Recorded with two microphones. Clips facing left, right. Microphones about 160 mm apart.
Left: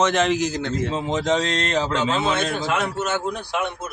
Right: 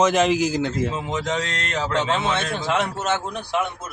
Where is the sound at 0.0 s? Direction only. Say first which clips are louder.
Right 2 dB; 10° right (ahead or behind).